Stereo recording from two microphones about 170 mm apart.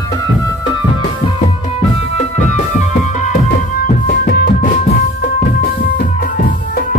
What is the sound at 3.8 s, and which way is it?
Music, 50° left (ahead or behind).